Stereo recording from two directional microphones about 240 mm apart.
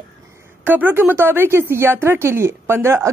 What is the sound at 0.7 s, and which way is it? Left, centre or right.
A woman's voice, centre.